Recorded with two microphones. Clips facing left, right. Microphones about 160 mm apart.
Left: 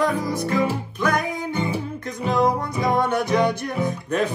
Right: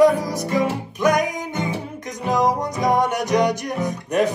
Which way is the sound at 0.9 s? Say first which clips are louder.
Right 5 dB; 15° right (ahead or behind).